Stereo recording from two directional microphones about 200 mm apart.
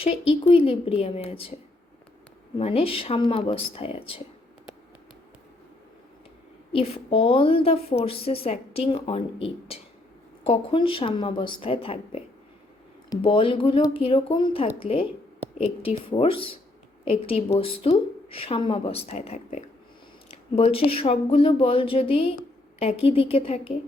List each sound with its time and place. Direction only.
0.0 s a woman's voice: 30° left (ahead or behind)
2.6 s a woman's voice: 30° left (ahead or behind)
6.7 s a woman's voice: 30° left (ahead or behind)